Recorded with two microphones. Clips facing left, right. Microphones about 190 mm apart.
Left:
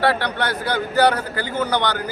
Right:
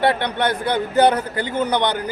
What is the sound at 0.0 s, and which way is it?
A man's voice, 20° right (ahead or behind).